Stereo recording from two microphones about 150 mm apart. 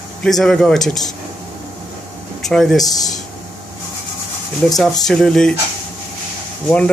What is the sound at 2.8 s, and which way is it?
Speech, 25° left (ahead or behind).